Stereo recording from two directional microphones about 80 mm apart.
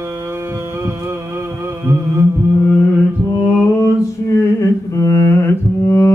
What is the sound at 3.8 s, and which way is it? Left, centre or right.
Mantra, left.